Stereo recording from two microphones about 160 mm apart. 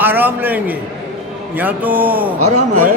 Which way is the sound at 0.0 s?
10° right (ahead or behind).